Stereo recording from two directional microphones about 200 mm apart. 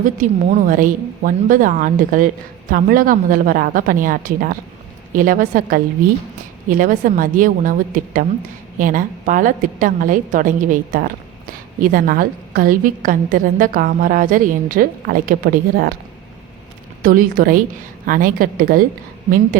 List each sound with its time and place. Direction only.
0.0 s a woman's voice: 40° right (ahead or behind)
17.0 s a woman's voice: 45° right (ahead or behind)